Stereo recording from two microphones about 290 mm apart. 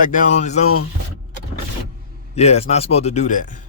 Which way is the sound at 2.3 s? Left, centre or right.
Left.